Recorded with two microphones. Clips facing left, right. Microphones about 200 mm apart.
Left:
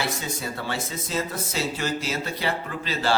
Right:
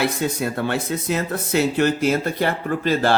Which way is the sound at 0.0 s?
60° right (ahead or behind).